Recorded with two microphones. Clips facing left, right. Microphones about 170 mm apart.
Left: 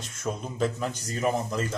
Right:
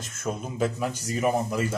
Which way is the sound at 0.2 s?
5° right (ahead or behind).